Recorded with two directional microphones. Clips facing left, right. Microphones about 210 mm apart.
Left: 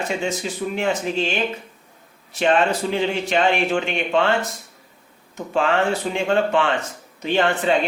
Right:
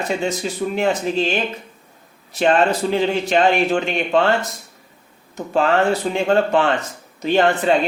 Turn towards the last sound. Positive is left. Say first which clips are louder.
# right 3 dB
turn(degrees=-40)  # may be behind; listen again after turning